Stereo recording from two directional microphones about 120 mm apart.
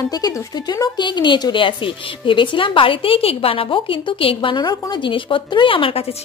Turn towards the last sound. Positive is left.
turn(degrees=50)  # may be behind; listen again after turning